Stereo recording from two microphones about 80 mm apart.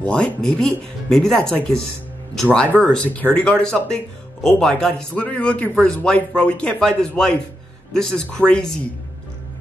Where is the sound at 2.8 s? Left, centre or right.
Centre.